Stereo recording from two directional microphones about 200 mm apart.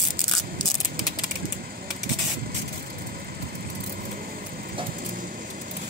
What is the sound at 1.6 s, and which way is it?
Vehicle, 50° right (ahead or behind).